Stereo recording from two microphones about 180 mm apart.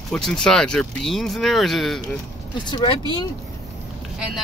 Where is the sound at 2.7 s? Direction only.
25° left (ahead or behind).